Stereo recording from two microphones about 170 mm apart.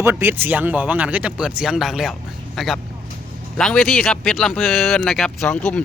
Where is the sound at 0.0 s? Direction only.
15° right (ahead or behind).